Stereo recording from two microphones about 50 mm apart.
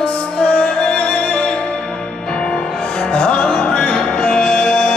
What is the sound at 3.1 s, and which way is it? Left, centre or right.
Music, left.